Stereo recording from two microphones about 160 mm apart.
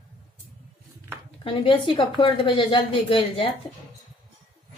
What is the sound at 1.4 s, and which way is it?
A woman's voice, 35° left (ahead or behind).